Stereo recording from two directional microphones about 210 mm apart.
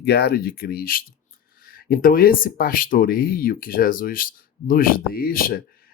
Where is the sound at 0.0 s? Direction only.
50° left (ahead or behind).